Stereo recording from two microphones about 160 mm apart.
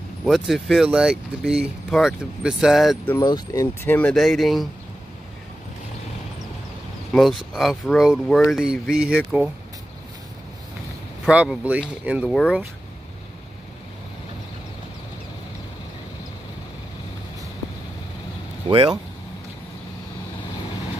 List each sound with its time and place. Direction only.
0.2 s speech: centre (ahead or behind)
3.1 s speech: 20° left (ahead or behind); by 4.6 s centre (ahead or behind)
7.1 s speech: centre (ahead or behind)
11.2 s speech: 5° right (ahead or behind)
18.7 s speech: 30° right (ahead or behind)